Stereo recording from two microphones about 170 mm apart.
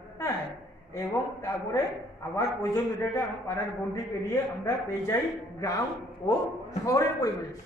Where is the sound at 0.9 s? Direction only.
20° left (ahead or behind).